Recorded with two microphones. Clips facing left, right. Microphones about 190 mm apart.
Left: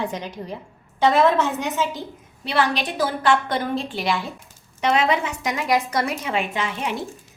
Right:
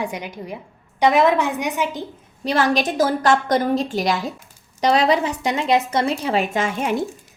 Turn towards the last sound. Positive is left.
turn(degrees=-45)  # may be behind; listen again after turning